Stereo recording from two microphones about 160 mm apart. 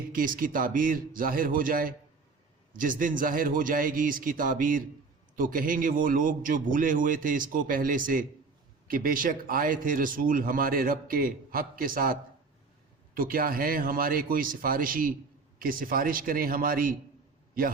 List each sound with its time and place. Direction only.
0.1 s a man's voice: 60° right (ahead or behind)
13.1 s a man's voice: 65° right (ahead or behind)